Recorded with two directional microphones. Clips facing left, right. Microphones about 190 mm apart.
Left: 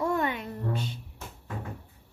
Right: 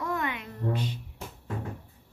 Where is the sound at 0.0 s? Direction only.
30° left (ahead or behind).